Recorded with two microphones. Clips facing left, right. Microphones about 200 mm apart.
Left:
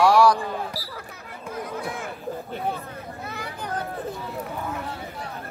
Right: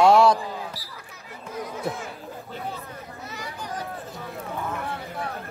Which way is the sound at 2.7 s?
60° left (ahead or behind).